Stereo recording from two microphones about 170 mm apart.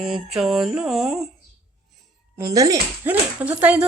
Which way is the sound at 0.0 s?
Centre (ahead or behind).